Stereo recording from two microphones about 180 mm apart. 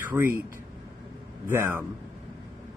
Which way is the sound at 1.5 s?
15° right (ahead or behind).